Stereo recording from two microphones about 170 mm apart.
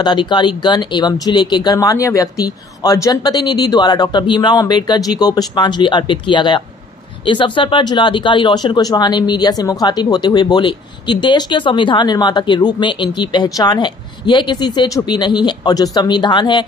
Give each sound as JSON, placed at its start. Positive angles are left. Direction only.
{"t": 0.0, "sound": "speech", "side_deg": 25}